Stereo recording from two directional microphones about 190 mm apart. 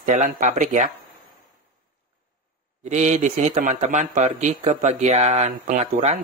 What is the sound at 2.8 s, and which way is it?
Speech, 40° right (ahead or behind).